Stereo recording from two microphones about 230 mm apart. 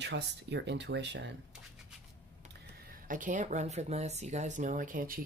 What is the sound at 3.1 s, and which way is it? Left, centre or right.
Speech, right.